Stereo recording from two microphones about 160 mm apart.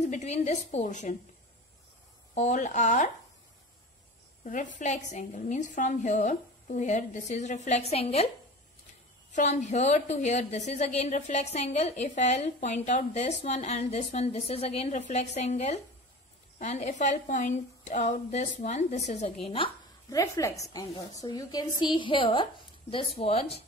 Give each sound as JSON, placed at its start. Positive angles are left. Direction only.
{"t": 0.0, "sound": "a woman's voice", "side_deg": 45}
{"t": 2.3, "sound": "a woman's voice", "side_deg": 50}
{"t": 4.5, "sound": "a woman's voice", "side_deg": 50}
{"t": 9.3, "sound": "a woman's voice", "side_deg": 45}
{"t": 19.6, "sound": "speech", "side_deg": 35}
{"t": 20.1, "sound": "a woman's voice", "side_deg": 20}